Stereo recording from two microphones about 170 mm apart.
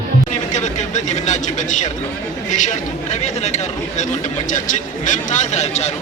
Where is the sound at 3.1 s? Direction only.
40° left (ahead or behind).